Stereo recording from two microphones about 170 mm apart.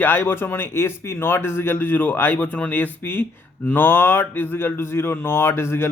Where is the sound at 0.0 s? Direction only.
10° left (ahead or behind).